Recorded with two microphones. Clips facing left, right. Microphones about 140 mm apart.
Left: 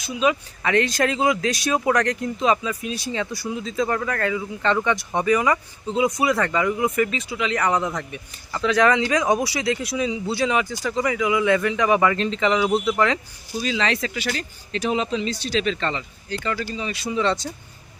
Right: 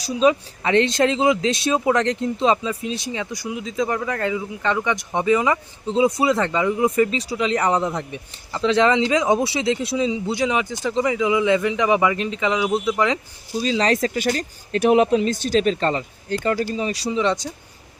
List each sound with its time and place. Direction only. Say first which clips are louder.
0.0 s speech: right 4 dB; 35° right (ahead or behind); by 13.1 s 15° right (ahead or behind)
13.6 s speech: right 4 dB; 35° right (ahead or behind)
14.8 s speech: right 8 dB; 60° right (ahead or behind); by 17.1 s 40° right (ahead or behind)
17.1 s speech: even; 15° right (ahead or behind)